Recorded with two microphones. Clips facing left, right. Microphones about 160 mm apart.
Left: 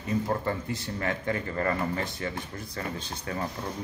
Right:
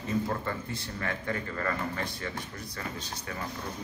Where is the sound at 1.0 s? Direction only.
25° left (ahead or behind).